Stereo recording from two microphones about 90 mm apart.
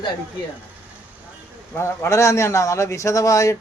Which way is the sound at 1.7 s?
30° left (ahead or behind).